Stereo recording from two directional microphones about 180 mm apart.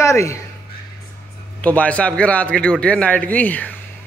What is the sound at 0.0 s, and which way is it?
Speech, 15° left (ahead or behind).